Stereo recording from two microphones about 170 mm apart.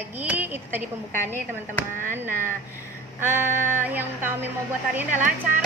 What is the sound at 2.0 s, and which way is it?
Child singing, 15° right (ahead or behind).